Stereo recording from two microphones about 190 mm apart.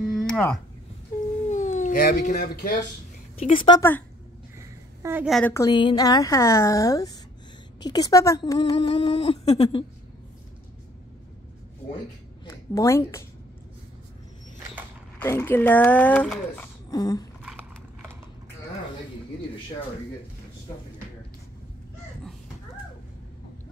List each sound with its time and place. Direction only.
0.0 s a sound: 5° left (ahead or behind)
1.5 s speech: 40° left (ahead or behind)
3.3 s speech: 30° left (ahead or behind)
4.6 s a sound: 15° right (ahead or behind)
5.2 s a woman's voice: centre (ahead or behind)
5.5 s speech: 20° left (ahead or behind)
12.4 s a woman's voice: 15° left (ahead or behind)
15.1 s speech: 10° left (ahead or behind)
16.9 s speech: 20° left (ahead or behind)
17.4 s a sound: 5° right (ahead or behind)